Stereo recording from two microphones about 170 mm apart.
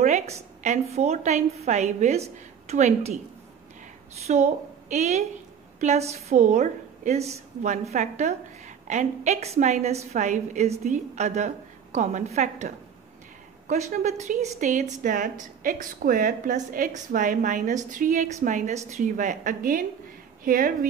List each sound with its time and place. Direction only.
0.0 s a woman's voice: 40° right (ahead or behind)
4.3 s a woman's voice: 45° right (ahead or behind)